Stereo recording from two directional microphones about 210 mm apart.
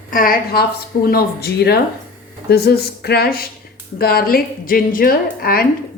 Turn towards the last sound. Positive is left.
turn(degrees=45)  # may be behind; listen again after turning